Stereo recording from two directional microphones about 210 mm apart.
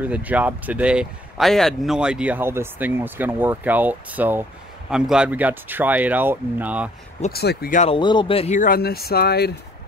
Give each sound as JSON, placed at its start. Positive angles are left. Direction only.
{"t": 0.0, "sound": "speech", "side_deg": -5}
{"t": 7.2, "sound": "speech", "side_deg": 45}
{"t": 7.8, "sound": "speech", "side_deg": 25}